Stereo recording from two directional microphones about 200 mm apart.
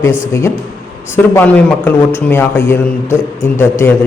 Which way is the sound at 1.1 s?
10° left (ahead or behind).